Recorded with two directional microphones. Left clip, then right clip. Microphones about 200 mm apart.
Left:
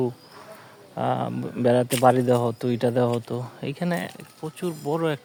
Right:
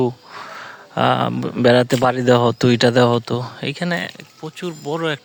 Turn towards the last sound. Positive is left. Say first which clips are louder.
# right 3 dB
turn(degrees=0)  # may be behind; listen again after turning